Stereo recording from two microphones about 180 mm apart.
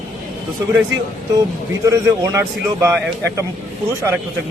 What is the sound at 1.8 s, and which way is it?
A man's voice, 15° right (ahead or behind).